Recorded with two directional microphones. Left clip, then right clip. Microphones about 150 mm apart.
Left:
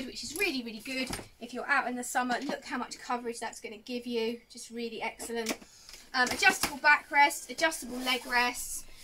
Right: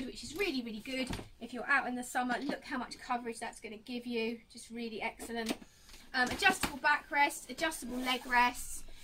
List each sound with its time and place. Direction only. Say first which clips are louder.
0.4 s speech: left 4 dB; 5° right (ahead or behind)
1.7 s a woman's voice: left 2 dB; 20° right (ahead or behind); by 8.5 s centre (ahead or behind)